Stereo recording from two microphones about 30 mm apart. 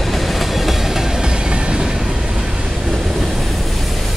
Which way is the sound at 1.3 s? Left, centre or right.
Right.